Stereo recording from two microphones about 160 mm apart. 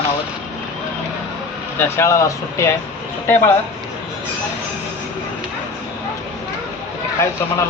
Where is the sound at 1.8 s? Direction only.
15° left (ahead or behind).